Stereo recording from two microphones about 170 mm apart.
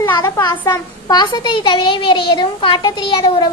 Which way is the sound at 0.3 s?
25° left (ahead or behind).